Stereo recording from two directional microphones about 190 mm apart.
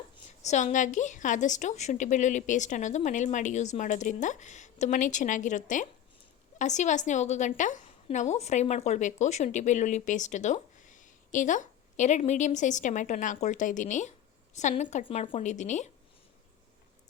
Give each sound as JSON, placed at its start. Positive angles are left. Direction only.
{"t": 0.4, "sound": "a woman's voice", "side_deg": 40}